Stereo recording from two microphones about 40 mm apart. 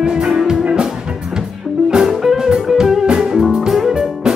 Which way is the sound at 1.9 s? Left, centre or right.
Centre.